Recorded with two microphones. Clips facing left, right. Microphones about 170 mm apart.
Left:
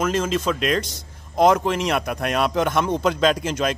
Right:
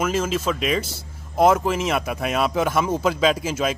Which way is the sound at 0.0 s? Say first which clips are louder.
Left 1 dB; 5° right (ahead or behind).